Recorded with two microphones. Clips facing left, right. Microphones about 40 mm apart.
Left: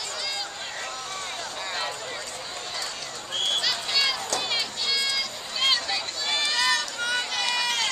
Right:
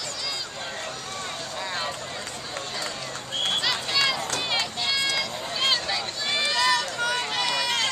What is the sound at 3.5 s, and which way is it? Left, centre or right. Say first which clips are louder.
Run: right 1 dB; centre.